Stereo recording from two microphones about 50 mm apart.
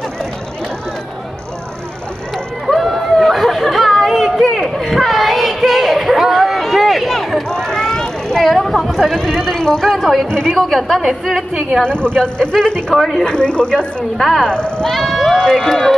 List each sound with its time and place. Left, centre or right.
2.3 s a sound: centre
7.4 s vehicle: centre
8.5 s speech: centre
9.8 s a woman's voice: centre
10.2 s speech: centre
10.6 s a woman's voice: centre
11.8 s speech: left
12.9 s a woman's voice: centre
13.2 s speech: centre
14.1 s a woman's voice: centre
14.4 s speech: centre
14.9 s a woman's voice: centre